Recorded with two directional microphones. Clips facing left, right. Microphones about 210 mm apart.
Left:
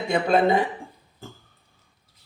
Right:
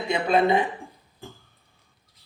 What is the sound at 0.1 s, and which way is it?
Speech, 45° left (ahead or behind).